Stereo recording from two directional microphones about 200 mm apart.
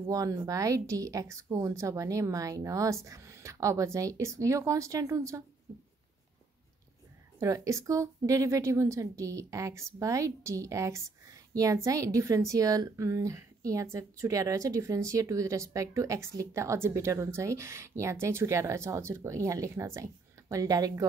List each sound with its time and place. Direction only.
0.0 s a woman's voice: 15° right (ahead or behind)
7.3 s a woman's voice: 15° right (ahead or behind)